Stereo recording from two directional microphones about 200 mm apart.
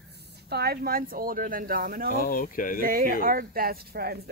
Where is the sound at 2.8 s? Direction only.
45° right (ahead or behind).